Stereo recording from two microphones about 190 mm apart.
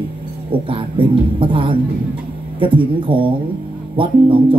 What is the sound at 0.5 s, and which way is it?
Speech, 25° right (ahead or behind).